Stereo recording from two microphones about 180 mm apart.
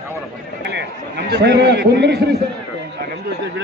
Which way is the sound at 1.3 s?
70° right (ahead or behind).